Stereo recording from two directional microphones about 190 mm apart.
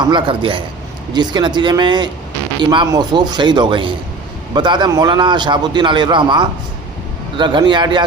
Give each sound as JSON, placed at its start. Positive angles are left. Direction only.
{"t": 0.1, "sound": "a man's voice", "side_deg": -25}